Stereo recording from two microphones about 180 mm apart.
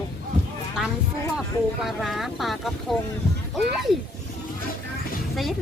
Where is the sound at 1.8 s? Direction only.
Centre (ahead or behind).